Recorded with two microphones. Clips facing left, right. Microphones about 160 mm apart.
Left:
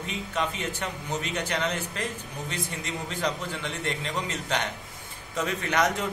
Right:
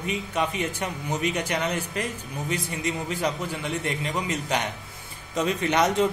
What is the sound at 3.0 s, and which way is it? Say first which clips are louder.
Speech: right 3 dB; 10° right (ahead or behind).